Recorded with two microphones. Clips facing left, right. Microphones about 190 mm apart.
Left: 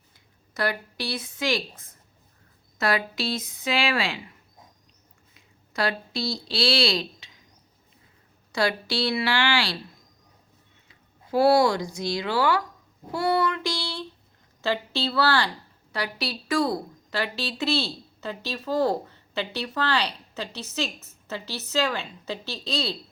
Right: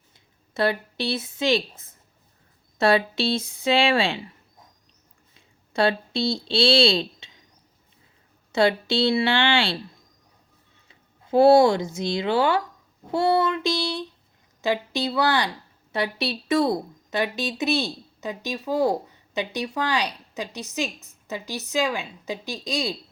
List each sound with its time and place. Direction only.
0.5 s speech: 25° right (ahead or behind)
5.3 s speech: 25° right (ahead or behind)
8.5 s speech: 25° right (ahead or behind)
10.8 s speech: 25° right (ahead or behind)